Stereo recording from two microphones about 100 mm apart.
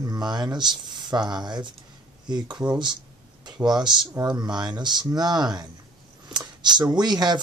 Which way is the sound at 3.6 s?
45° right (ahead or behind).